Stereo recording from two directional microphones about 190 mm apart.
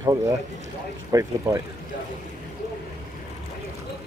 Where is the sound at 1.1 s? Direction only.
15° right (ahead or behind).